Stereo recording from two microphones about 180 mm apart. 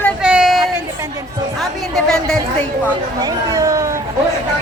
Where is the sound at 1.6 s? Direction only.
Centre (ahead or behind).